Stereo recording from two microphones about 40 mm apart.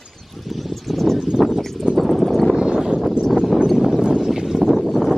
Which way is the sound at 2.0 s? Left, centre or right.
Centre.